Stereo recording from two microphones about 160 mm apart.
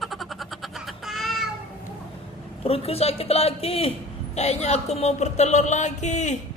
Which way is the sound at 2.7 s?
40° left (ahead or behind).